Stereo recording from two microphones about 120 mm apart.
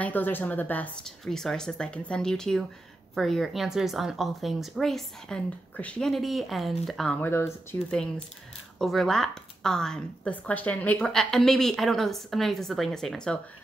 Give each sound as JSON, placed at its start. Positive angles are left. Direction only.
{"t": 0.0, "sound": "speech", "side_deg": 15}
{"t": 7.1, "sound": "speech", "side_deg": 20}
{"t": 8.7, "sound": "speech", "side_deg": 0}